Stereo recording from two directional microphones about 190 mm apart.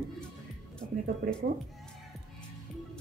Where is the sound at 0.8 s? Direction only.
45° right (ahead or behind).